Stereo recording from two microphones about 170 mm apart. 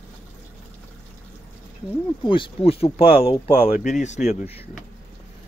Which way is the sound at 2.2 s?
30° left (ahead or behind).